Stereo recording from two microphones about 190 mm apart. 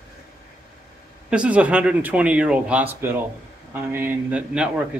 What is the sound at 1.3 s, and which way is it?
Speech, 5° right (ahead or behind).